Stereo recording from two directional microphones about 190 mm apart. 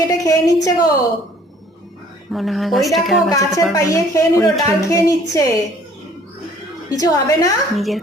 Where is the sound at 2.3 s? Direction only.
Centre (ahead or behind).